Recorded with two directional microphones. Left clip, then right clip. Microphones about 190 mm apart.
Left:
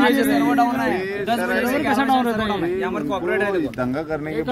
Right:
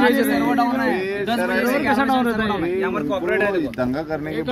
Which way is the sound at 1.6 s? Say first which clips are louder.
Right 1 dB; 30° left (ahead or behind).